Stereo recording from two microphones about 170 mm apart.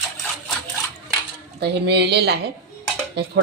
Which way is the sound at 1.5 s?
75° right (ahead or behind).